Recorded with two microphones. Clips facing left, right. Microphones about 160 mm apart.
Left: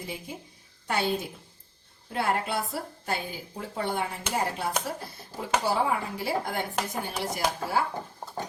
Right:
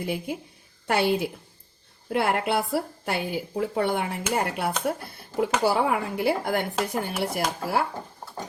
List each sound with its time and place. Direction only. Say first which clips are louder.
0.0 s a woman's voice: right 8 dB; 65° right (ahead or behind)